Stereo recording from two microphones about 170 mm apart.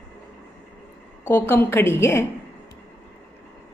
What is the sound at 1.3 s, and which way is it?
Speech, 15° left (ahead or behind).